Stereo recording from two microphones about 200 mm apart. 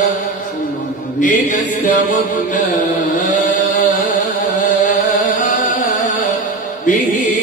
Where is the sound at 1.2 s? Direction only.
40° left (ahead or behind).